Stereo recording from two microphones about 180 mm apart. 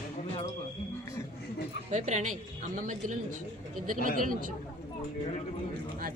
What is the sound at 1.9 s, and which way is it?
A woman's voice, 40° right (ahead or behind).